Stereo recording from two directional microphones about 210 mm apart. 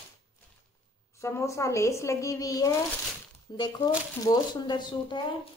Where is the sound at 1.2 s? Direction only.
15° left (ahead or behind).